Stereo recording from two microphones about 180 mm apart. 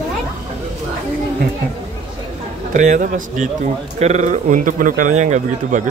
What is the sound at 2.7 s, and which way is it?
Speech, 45° right (ahead or behind).